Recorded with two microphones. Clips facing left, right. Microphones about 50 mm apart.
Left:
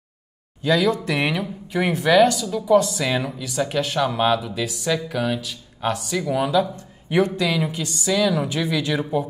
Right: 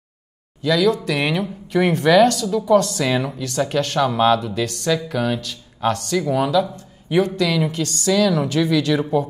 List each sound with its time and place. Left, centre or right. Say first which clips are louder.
0.6 s speech: right 2 dB; left
1.3 s speech: right 4 dB; centre
3.1 s speech: right 3 dB; centre
6.5 s speech: right 1 dB; left
7.1 s speech: right 2 dB; left
7.7 s speech: right 4 dB; centre